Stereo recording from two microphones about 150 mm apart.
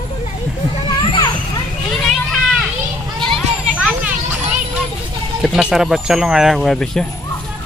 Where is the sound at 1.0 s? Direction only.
30° left (ahead or behind).